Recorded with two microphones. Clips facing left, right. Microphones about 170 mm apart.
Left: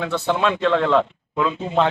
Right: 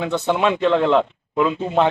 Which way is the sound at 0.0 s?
15° right (ahead or behind).